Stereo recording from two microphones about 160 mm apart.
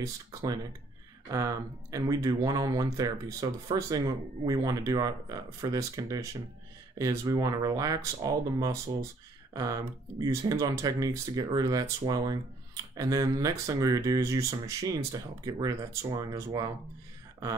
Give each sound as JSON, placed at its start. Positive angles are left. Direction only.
{"t": 0.0, "sound": "speech", "side_deg": -20}